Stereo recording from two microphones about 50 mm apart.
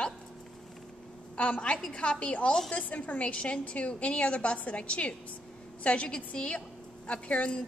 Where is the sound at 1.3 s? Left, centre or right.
Left.